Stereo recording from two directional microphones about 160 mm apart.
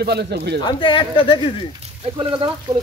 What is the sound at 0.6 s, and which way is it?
Speech, 30° left (ahead or behind).